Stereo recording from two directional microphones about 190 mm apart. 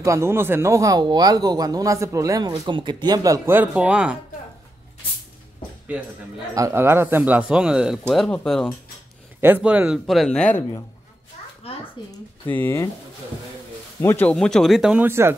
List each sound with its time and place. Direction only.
0.0 s speech: 15° right (ahead or behind)
6.5 s speech: 15° right (ahead or behind); by 8.7 s centre (ahead or behind)
9.4 s speech: 10° right (ahead or behind)
12.4 s speech: 10° left (ahead or behind)
14.0 s speech: 10° left (ahead or behind); by 15.3 s 10° right (ahead or behind)